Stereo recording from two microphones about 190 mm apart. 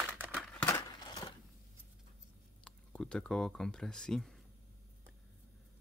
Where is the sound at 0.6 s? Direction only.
20° left (ahead or behind).